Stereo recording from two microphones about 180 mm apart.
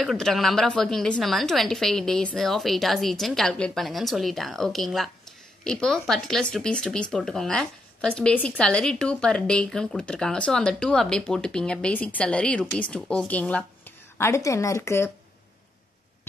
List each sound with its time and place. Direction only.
0.0 s speech: centre (ahead or behind)